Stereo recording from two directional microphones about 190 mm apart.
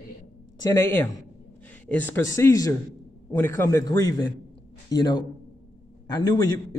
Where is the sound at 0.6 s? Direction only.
15° left (ahead or behind).